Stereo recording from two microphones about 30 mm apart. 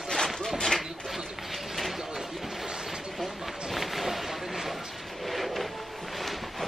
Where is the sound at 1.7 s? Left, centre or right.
Centre.